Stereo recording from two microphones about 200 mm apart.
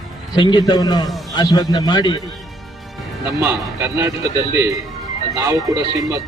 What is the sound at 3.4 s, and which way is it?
Speech, 15° right (ahead or behind).